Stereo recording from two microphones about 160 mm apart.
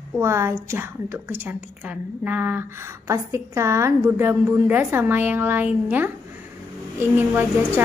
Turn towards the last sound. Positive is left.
turn(degrees=-10)  # may be behind; listen again after turning